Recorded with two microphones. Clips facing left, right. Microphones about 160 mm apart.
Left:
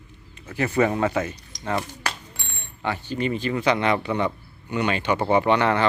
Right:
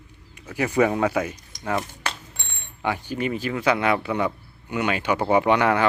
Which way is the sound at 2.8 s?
10° right (ahead or behind).